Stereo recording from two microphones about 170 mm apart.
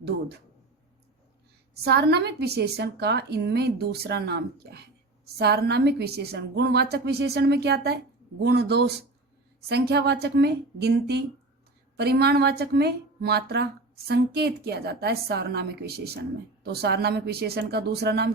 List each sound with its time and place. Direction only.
1.7 s a woman's voice: 70° right (ahead or behind)